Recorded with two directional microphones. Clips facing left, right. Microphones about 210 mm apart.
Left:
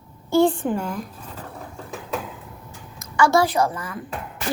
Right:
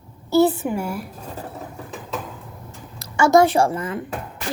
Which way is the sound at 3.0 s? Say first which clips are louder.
Right 4 dB; 25° right (ahead or behind).